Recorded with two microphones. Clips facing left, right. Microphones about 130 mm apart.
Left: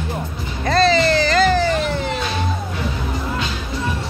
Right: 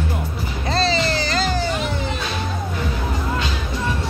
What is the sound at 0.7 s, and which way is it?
Music, 55° left (ahead or behind).